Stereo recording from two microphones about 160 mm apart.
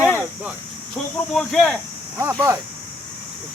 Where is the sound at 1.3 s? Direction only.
Centre (ahead or behind).